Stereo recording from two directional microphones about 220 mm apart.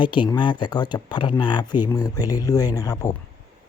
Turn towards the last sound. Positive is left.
turn(degrees=15)  # may be behind; listen again after turning